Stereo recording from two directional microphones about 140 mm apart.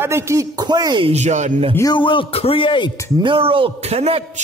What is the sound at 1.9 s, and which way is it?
Speech, 35° left (ahead or behind).